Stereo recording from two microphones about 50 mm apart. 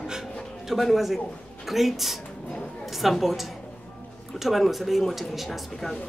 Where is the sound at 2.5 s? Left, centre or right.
Centre.